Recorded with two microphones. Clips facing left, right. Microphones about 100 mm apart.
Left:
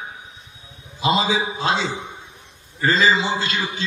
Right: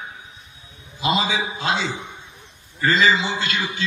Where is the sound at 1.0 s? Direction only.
30° left (ahead or behind).